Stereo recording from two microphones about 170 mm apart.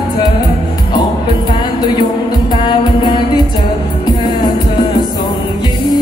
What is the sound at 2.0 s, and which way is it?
Music, 30° left (ahead or behind).